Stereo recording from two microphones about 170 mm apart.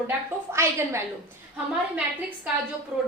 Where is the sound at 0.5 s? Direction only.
15° right (ahead or behind).